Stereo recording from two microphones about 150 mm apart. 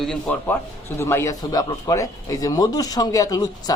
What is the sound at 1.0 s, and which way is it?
Speech, 15° left (ahead or behind).